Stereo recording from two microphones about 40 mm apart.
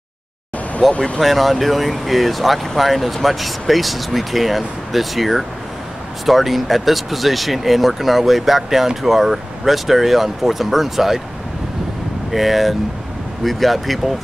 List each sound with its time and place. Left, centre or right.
0.9 s speech: left
1.2 s speech: centre
12.3 s speech: centre